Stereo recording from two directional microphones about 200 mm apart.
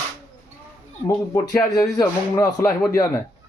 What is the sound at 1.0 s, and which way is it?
Speech, 15° left (ahead or behind).